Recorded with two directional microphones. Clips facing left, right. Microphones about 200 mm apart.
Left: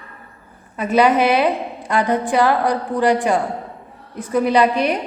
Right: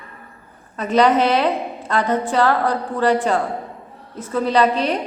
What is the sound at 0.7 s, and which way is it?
A woman's voice, 10° left (ahead or behind).